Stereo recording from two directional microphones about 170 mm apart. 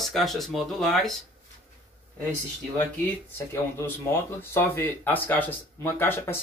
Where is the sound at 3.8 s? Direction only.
15° left (ahead or behind).